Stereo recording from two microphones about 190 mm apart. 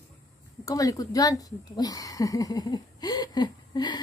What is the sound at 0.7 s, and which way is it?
Speech, 20° left (ahead or behind).